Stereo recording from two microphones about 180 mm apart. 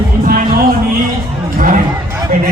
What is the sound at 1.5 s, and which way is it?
Speech, 50° right (ahead or behind).